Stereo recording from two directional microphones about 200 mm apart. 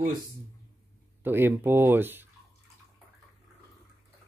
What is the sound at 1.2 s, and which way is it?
Speech, 10° right (ahead or behind).